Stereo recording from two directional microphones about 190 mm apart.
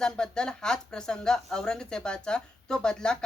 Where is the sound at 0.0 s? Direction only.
5° left (ahead or behind).